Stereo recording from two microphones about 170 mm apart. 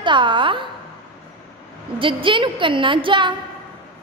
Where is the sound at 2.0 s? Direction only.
30° right (ahead or behind).